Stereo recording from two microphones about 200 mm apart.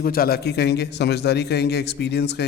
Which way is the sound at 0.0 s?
50° left (ahead or behind).